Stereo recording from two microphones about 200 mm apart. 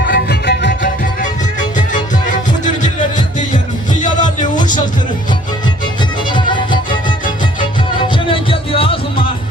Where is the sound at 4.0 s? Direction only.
40° left (ahead or behind).